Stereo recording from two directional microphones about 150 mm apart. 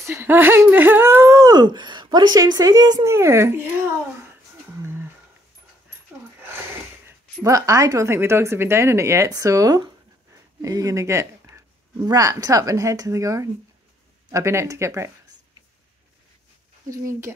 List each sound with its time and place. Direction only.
0.0 s speech: 15° right (ahead or behind)
7.1 s speech: 20° right (ahead or behind)
16.9 s speech: 20° right (ahead or behind)